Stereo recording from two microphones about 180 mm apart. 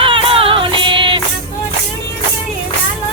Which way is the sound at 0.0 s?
30° right (ahead or behind).